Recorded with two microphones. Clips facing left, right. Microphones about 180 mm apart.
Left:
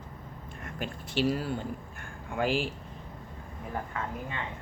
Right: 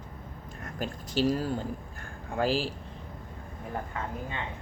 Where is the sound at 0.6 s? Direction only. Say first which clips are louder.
Right 2 dB; 40° right (ahead or behind).